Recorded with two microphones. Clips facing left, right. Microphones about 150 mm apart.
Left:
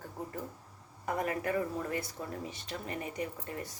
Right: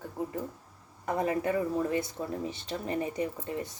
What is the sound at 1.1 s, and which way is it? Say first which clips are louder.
Speech: right 4 dB; 25° right (ahead or behind).